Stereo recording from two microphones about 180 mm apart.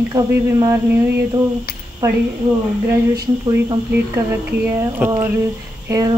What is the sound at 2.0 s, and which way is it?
Speech, 15° right (ahead or behind).